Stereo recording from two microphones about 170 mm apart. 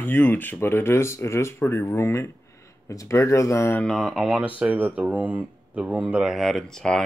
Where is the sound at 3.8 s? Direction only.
Centre (ahead or behind).